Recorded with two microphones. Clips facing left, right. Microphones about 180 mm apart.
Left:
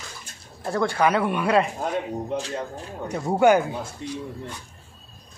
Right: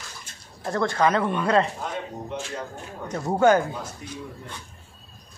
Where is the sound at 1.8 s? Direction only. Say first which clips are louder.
Left 5 dB; 35° left (ahead or behind).